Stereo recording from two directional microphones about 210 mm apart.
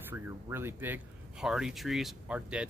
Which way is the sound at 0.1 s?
10° right (ahead or behind).